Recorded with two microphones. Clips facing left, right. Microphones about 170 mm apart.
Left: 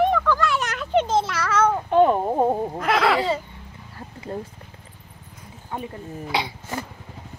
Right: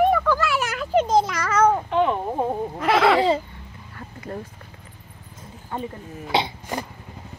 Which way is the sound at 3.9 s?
25° left (ahead or behind).